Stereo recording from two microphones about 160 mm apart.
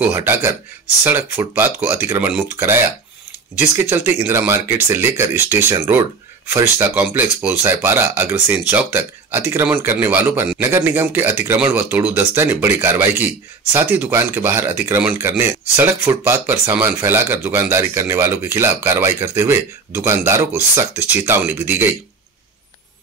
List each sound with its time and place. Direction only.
0.0 s speech: 15° right (ahead or behind)
3.9 s speech: 15° right (ahead or behind)